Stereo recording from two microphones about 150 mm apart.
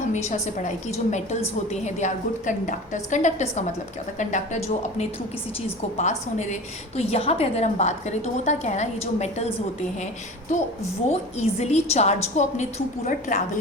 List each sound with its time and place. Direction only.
0.1 s a woman's voice: 50° left (ahead or behind)
11.1 s a woman's voice: 45° left (ahead or behind)